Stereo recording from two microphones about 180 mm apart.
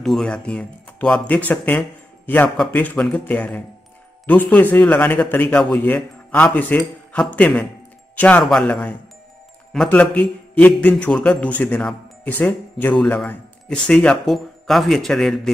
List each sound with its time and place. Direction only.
0.0 s speech: 5° left (ahead or behind)